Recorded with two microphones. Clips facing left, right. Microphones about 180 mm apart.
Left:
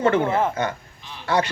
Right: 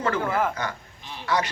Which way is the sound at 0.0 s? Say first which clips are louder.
Left 5 dB; 25° left (ahead or behind).